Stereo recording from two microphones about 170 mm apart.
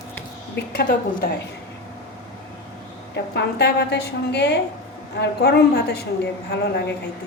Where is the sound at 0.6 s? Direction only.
65° left (ahead or behind).